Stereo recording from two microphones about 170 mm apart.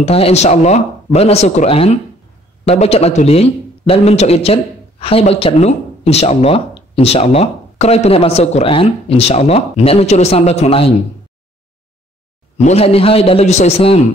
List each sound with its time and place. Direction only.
0.0 s a man's voice: 35° left (ahead or behind)
12.5 s a man's voice: 40° left (ahead or behind)